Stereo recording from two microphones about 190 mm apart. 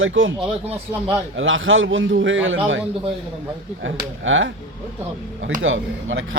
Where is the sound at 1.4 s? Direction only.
90° right.